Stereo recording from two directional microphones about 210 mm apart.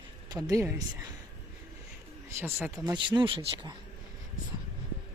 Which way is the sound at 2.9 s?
20° right (ahead or behind).